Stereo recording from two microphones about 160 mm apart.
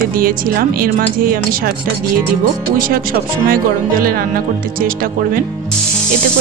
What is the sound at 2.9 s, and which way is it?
Speech, 65° right (ahead or behind).